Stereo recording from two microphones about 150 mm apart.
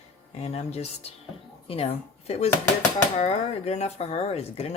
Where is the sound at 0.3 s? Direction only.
45° left (ahead or behind).